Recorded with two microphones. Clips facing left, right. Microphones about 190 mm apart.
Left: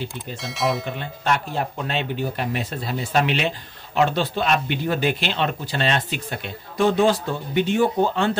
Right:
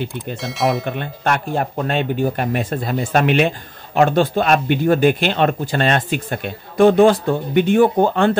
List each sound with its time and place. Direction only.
0.4 s speech: centre (ahead or behind)
0.8 s speech: 60° right (ahead or behind)